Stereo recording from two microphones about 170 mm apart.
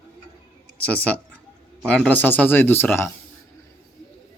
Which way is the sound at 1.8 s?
5° left (ahead or behind).